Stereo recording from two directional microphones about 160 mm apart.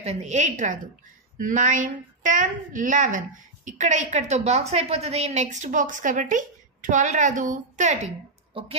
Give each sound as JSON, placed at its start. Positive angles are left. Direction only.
{"t": 0.0, "sound": "a woman's voice", "side_deg": -40}